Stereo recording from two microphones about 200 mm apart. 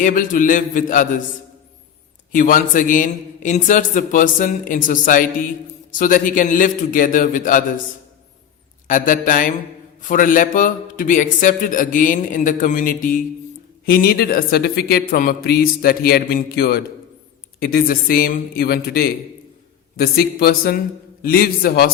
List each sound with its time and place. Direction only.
0.0 s a man's voice: 40° left (ahead or behind)
2.3 s a man's voice: 45° left (ahead or behind)
8.9 s a man's voice: 40° left (ahead or behind)